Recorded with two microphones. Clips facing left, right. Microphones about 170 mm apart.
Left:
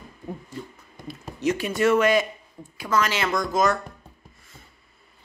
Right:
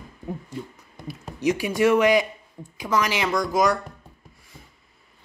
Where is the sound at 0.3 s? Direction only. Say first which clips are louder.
Right 2 dB; 15° right (ahead or behind).